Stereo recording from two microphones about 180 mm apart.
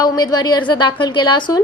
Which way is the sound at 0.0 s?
20° left (ahead or behind).